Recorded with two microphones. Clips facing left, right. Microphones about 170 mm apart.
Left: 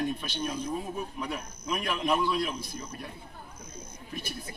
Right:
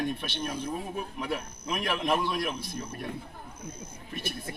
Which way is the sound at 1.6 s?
60° right (ahead or behind).